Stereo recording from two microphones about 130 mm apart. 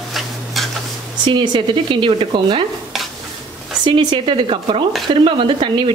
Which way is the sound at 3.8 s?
40° right (ahead or behind).